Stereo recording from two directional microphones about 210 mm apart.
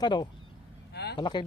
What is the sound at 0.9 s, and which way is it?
Vehicle, 50° left (ahead or behind).